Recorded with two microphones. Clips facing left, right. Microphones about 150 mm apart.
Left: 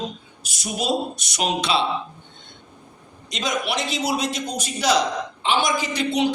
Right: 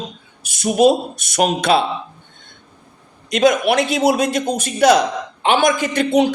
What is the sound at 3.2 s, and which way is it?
A man's voice, 60° right (ahead or behind).